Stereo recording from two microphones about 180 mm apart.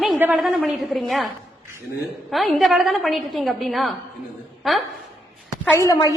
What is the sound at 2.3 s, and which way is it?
A woman's voice, centre (ahead or behind).